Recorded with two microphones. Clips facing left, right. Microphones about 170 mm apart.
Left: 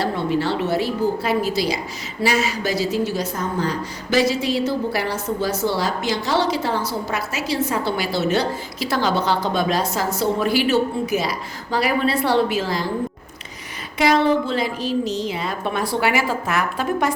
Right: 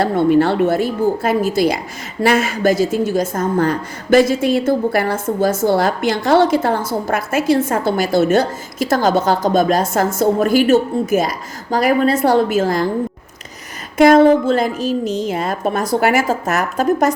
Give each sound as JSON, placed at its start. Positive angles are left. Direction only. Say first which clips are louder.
{"t": 0.0, "sound": "a woman's voice", "louder": "right 8 dB", "side_deg": -55}
{"t": 14.0, "sound": "a woman's voice", "louder": "right 8 dB", "side_deg": -50}